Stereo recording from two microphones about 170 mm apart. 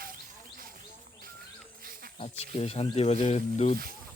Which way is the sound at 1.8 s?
60° right (ahead or behind).